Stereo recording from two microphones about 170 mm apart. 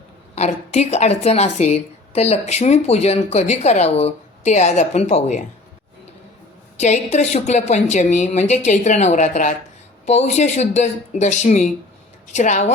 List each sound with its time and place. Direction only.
0.3 s a woman's voice: 40° left (ahead or behind)
6.7 s a woman's voice: 40° left (ahead or behind)